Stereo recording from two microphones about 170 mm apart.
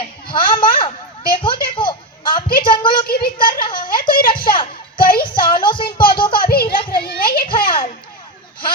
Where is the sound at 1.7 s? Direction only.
30° left (ahead or behind).